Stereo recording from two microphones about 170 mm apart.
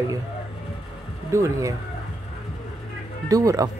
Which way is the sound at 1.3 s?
20° right (ahead or behind).